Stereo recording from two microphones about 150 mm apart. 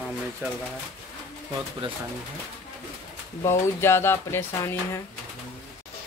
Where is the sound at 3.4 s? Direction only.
15° left (ahead or behind).